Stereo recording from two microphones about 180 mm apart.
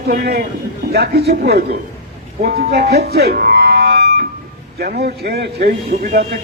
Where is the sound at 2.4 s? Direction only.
65° right (ahead or behind).